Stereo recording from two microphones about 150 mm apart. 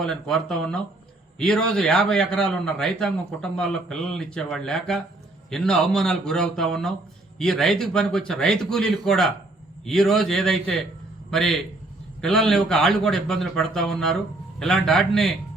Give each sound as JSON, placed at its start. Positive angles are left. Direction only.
{"t": 0.0, "sound": "a man's voice", "side_deg": 5}